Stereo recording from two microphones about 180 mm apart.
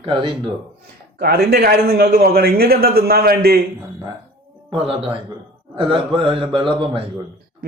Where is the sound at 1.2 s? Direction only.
60° right (ahead or behind).